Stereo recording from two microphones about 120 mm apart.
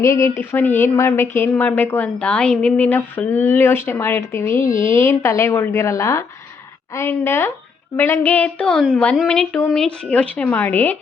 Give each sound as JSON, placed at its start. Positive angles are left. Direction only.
{"t": 0.0, "sound": "speech", "side_deg": 25}